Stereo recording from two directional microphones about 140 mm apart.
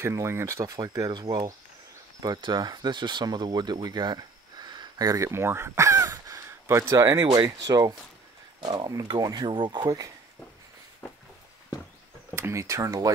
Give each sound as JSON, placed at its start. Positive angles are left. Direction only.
{"t": 0.0, "sound": "speech", "side_deg": -20}
{"t": 12.4, "sound": "speech", "side_deg": -20}